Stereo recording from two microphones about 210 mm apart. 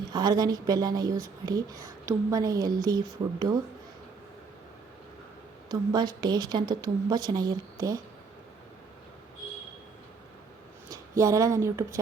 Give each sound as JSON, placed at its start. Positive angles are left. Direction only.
{"t": 0.1, "sound": "speech", "side_deg": -20}
{"t": 5.6, "sound": "speech", "side_deg": -20}
{"t": 10.8, "sound": "a woman's voice", "side_deg": -15}